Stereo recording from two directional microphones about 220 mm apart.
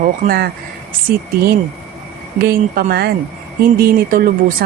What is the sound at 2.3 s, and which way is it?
Speech, 45° right (ahead or behind).